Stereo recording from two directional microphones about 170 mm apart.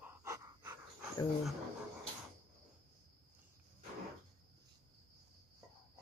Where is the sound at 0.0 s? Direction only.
15° right (ahead or behind).